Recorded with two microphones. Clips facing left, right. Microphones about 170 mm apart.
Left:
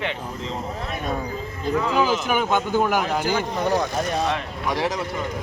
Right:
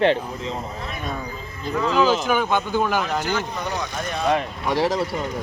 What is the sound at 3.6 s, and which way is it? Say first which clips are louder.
Speech: left 6 dB; 40° left (ahead or behind).